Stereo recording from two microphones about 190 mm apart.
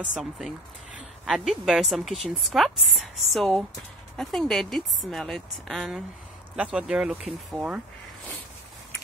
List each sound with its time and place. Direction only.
0.0 s a woman's voice: 5° right (ahead or behind)